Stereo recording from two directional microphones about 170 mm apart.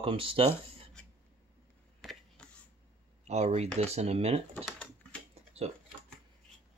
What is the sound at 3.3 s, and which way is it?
Speech, 40° right (ahead or behind).